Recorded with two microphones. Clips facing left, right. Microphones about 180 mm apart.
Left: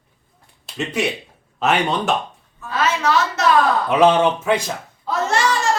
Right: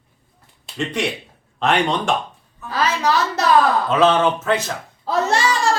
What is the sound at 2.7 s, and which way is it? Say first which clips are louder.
Speech: even; 35° right (ahead or behind).